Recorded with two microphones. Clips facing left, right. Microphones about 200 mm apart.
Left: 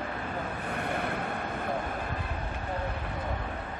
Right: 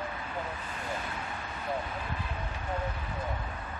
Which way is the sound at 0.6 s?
60° left (ahead or behind).